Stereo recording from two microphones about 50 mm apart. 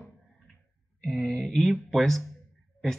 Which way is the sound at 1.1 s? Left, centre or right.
Left.